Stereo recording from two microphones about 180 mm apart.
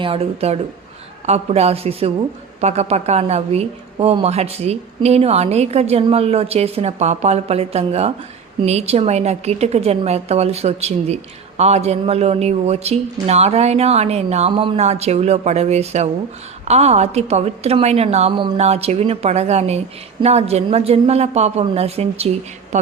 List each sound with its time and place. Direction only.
0.0 s a woman's voice: 30° right (ahead or behind)